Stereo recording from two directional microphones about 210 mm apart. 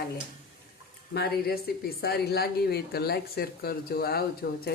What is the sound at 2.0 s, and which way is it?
Speech, 50° left (ahead or behind).